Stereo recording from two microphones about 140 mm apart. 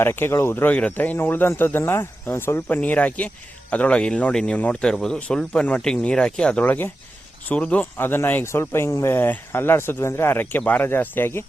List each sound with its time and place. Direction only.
0.0 s speech: 20° left (ahead or behind)